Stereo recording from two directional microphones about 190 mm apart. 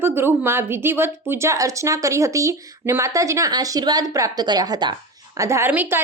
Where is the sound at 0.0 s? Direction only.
10° right (ahead or behind).